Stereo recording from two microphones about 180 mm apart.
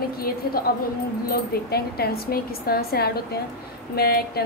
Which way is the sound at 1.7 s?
60° left (ahead or behind).